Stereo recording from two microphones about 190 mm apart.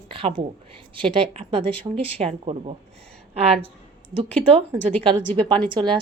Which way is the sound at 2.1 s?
30° right (ahead or behind).